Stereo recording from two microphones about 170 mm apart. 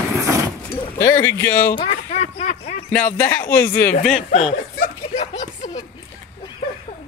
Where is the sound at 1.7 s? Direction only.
40° left (ahead or behind).